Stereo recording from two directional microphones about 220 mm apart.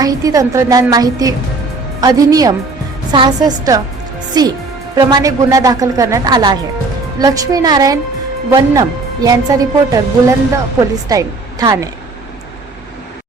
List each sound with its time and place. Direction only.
0.0 s a woman's voice: 15° right (ahead or behind)